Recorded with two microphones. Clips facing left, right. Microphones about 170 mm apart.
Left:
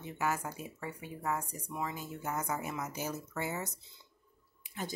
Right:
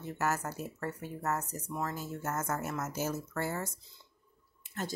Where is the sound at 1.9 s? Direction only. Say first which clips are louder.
Right 3 dB; 40° right (ahead or behind).